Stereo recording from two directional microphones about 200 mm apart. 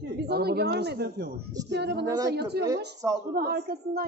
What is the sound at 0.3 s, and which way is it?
A woman's voice, 55° right (ahead or behind).